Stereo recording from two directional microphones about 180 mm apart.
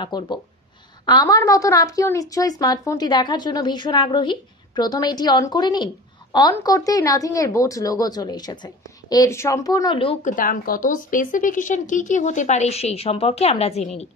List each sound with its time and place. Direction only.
0.0 s a woman's voice: 25° left (ahead or behind)
10.2 s a woman's voice: 50° left (ahead or behind)